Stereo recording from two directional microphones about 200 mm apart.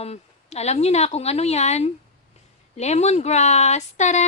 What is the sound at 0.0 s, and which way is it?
Speech, 30° left (ahead or behind).